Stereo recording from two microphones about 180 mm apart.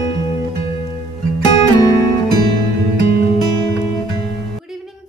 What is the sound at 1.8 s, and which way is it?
Music, 20° left (ahead or behind).